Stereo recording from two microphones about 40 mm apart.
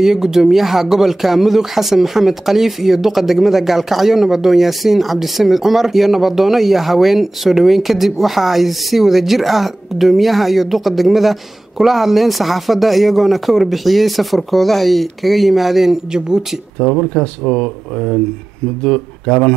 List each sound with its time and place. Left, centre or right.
0.0 s speech: centre
16.1 s speech: centre
16.7 s speech: centre